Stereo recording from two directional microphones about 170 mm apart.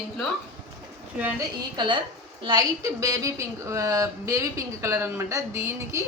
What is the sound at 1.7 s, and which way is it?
A woman's voice, 25° right (ahead or behind).